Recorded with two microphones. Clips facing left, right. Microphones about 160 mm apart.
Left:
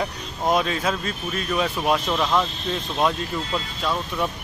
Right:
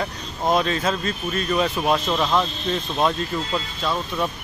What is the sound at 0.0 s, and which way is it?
Speech, 10° left (ahead or behind).